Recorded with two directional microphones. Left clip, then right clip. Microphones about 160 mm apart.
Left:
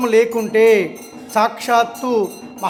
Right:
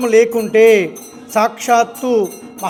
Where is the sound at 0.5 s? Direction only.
20° right (ahead or behind).